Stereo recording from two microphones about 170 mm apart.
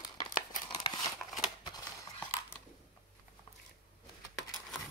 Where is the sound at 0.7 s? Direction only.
25° left (ahead or behind).